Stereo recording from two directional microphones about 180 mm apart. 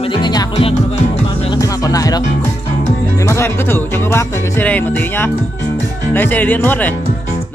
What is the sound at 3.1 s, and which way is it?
A man's voice, 15° left (ahead or behind).